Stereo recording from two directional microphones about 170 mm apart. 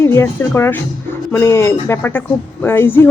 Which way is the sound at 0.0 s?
15° left (ahead or behind).